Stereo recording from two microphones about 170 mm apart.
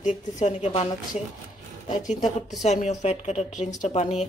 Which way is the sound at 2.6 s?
40° left (ahead or behind).